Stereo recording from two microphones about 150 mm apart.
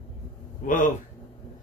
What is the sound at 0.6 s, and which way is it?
Speech, 65° left (ahead or behind).